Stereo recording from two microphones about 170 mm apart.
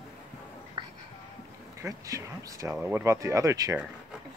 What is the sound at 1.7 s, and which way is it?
Speech, 20° right (ahead or behind).